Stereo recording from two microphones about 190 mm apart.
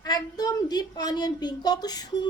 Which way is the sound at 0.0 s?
20° left (ahead or behind).